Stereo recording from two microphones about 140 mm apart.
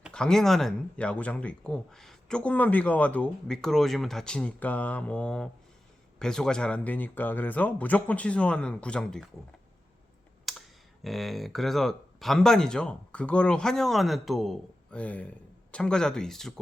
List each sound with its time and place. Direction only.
0.1 s speech: 5° left (ahead or behind)
10.5 s computer keyboard: centre (ahead or behind)
11.0 s speech: centre (ahead or behind)